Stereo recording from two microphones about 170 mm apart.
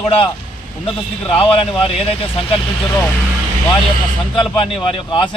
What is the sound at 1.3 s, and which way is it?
Speech, 30° left (ahead or behind).